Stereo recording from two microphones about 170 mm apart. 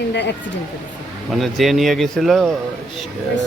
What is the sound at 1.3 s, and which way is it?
Speech, centre (ahead or behind).